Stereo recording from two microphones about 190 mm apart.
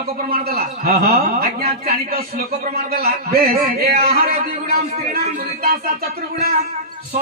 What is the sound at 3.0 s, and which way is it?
A man's voice, 55° right (ahead or behind).